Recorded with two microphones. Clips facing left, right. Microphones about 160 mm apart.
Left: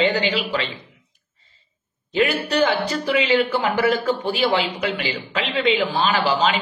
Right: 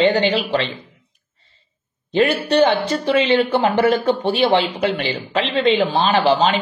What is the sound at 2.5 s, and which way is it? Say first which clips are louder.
Speech: right 4 dB; 35° right (ahead or behind).